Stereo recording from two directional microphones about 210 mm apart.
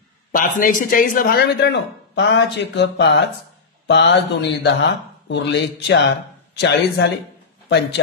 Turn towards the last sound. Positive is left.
turn(degrees=55)  # may be behind; listen again after turning